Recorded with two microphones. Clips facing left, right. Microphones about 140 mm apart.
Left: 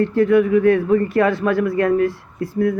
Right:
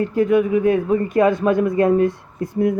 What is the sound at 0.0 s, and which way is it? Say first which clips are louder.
Speech: left 2 dB; 15° right (ahead or behind).